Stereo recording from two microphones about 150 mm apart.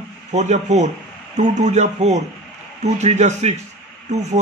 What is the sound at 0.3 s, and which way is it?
A man's voice, 50° right (ahead or behind).